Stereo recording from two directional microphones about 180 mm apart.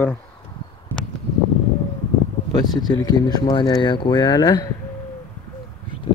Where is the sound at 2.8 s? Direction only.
20° left (ahead or behind).